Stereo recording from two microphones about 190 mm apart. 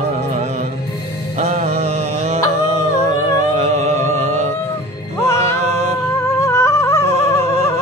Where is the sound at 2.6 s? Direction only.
35° right (ahead or behind).